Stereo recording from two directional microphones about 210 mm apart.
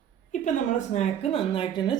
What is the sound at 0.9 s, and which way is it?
Speech, 25° left (ahead or behind).